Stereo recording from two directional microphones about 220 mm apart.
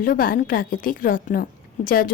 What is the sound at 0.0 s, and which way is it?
A woman's voice, 40° left (ahead or behind).